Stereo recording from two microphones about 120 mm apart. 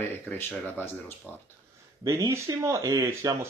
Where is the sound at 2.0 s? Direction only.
25° right (ahead or behind).